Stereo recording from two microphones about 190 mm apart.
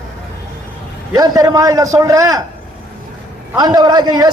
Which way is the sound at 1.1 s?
20° right (ahead or behind).